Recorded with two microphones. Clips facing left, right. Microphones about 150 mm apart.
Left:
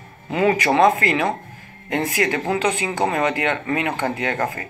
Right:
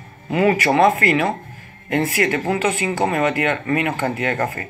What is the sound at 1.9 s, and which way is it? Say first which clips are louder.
Speech: right 2 dB; 20° left (ahead or behind).